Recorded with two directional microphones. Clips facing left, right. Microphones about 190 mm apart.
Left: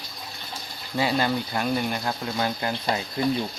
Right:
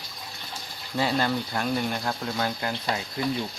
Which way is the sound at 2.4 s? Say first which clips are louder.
Left 4 dB; 15° left (ahead or behind).